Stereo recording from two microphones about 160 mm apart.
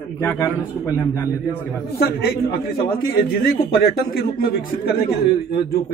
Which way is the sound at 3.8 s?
65° left (ahead or behind).